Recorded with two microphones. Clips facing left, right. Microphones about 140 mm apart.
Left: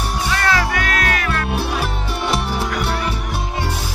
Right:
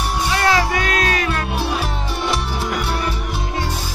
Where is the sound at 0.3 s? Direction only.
25° right (ahead or behind).